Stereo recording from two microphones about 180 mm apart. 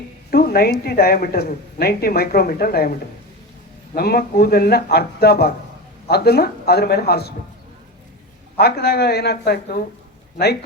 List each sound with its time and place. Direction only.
0.3 s a woman's voice: 60° left (ahead or behind)
8.5 s a woman's voice: 60° left (ahead or behind)